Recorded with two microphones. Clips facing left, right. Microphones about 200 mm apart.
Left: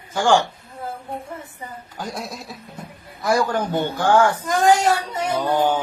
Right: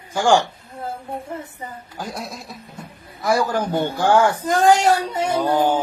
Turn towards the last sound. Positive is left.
turn(degrees=-10)  # may be behind; listen again after turning